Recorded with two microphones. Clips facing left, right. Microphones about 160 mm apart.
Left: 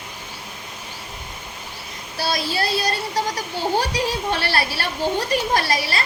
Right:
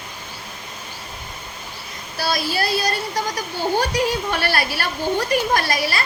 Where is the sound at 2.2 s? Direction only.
25° left (ahead or behind).